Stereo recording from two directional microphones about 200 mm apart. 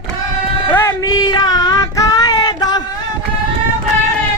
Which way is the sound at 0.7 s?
15° left (ahead or behind).